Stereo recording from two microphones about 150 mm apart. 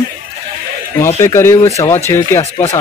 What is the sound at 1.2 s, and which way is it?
Speech, 20° left (ahead or behind).